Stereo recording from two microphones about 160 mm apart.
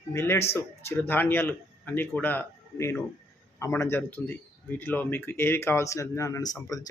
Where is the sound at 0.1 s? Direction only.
15° left (ahead or behind).